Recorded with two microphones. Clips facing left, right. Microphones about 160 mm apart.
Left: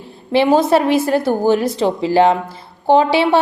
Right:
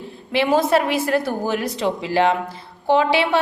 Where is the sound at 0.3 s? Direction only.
30° left (ahead or behind).